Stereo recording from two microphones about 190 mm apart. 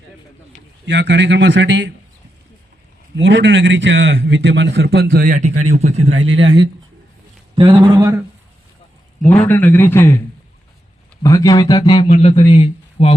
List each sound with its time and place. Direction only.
0.5 s a sound: 35° left (ahead or behind)
0.9 s a man's voice: 70° right (ahead or behind)
3.2 s a man's voice: 70° right (ahead or behind); by 5.8 s 40° right (ahead or behind)
6.1 s speech: 90° right
7.5 s a man's voice: 25° right (ahead or behind)
9.4 s a man's voice: 10° left (ahead or behind)
11.2 s speech: 20° left (ahead or behind)